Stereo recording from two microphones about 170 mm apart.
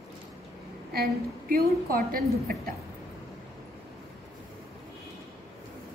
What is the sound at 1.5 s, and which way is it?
A woman's voice, 55° right (ahead or behind).